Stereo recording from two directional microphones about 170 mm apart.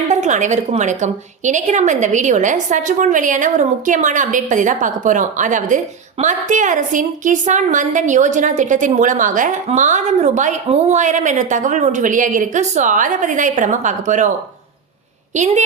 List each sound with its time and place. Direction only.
0.1 s a woman's voice: 45° right (ahead or behind)